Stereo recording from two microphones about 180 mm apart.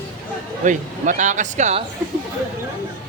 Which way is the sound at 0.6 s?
45° right (ahead or behind).